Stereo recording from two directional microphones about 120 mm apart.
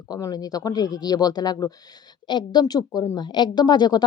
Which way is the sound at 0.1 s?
30° left (ahead or behind).